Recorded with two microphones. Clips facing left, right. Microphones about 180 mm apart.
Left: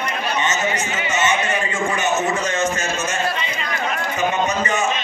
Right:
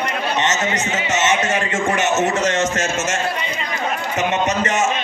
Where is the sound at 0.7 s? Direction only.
20° right (ahead or behind).